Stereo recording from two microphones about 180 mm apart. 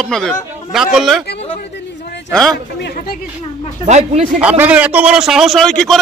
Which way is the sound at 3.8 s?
40° right (ahead or behind).